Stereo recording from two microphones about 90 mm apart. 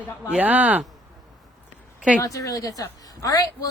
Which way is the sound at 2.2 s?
40° left (ahead or behind).